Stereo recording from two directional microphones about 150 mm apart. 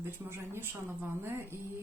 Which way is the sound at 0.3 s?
15° right (ahead or behind).